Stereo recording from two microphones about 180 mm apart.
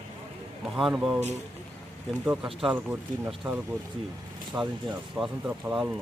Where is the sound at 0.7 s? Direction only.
5° right (ahead or behind).